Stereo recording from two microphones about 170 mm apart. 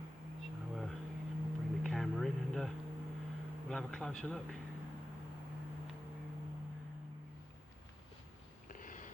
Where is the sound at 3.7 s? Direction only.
5° left (ahead or behind).